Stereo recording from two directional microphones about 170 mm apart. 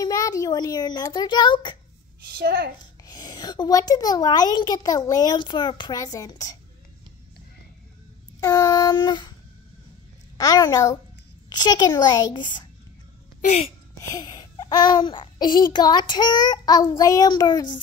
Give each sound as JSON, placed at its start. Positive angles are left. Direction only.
{"t": 0.0, "sound": "a child's voice", "side_deg": 20}
{"t": 2.3, "sound": "a child's voice", "side_deg": -70}
{"t": 3.1, "sound": "a child's voice", "side_deg": 20}
{"t": 8.4, "sound": "child singing", "side_deg": 20}
{"t": 10.3, "sound": "a child's voice", "side_deg": 20}
{"t": 13.4, "sound": "a woman's voice", "side_deg": 35}
{"t": 14.0, "sound": "a child's voice", "side_deg": 25}